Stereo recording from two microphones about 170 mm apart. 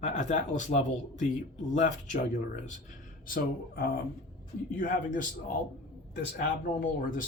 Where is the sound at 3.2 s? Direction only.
55° left (ahead or behind).